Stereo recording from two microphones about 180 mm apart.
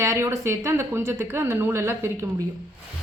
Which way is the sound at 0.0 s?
15° right (ahead or behind).